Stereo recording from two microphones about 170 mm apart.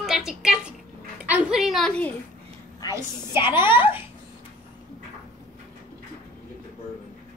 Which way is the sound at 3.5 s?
30° left (ahead or behind).